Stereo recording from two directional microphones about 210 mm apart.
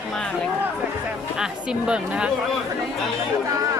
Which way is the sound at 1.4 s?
5° right (ahead or behind).